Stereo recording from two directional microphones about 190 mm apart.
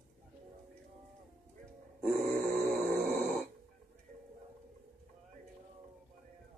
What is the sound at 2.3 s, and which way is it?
Grunt, 40° right (ahead or behind).